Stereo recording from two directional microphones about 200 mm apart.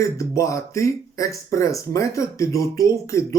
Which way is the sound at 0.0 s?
15° left (ahead or behind).